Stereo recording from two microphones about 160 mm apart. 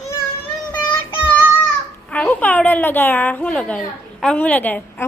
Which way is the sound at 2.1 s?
10° left (ahead or behind).